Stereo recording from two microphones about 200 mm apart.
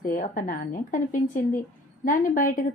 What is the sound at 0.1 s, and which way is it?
A woman's voice, 40° left (ahead or behind).